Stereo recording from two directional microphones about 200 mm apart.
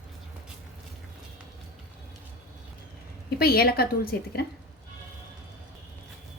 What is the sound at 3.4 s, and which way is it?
Speech, 50° left (ahead or behind).